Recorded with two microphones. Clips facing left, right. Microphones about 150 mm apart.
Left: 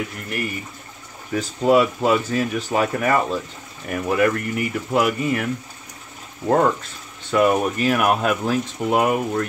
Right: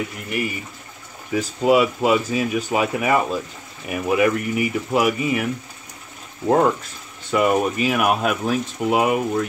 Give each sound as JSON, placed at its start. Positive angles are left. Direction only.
{"t": 1.3, "sound": "speech", "side_deg": -5}